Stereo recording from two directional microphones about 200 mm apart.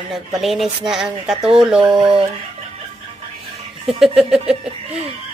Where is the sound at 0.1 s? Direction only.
Centre (ahead or behind).